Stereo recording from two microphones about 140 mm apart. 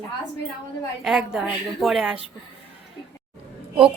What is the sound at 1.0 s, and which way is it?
A woman's voice, 5° right (ahead or behind).